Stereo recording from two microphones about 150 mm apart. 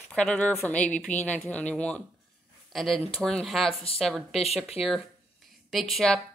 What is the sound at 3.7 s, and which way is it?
Speech, 40° left (ahead or behind).